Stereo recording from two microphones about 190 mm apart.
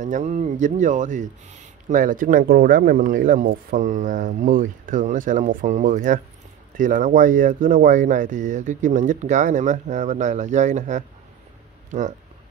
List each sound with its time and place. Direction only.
0.0 s speech: 40° right (ahead or behind)